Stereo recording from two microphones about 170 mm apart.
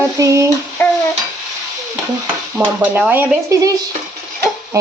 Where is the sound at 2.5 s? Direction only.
10° right (ahead or behind).